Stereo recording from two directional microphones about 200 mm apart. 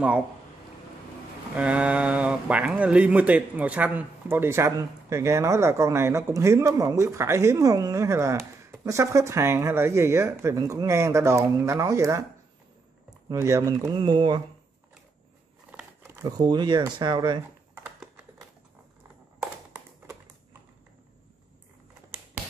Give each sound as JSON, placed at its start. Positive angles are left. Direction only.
{"t": 1.5, "sound": "speech", "side_deg": -5}
{"t": 13.3, "sound": "speech", "side_deg": -15}
{"t": 15.7, "sound": "speech", "side_deg": -10}
{"t": 17.8, "sound": "a sound", "side_deg": -5}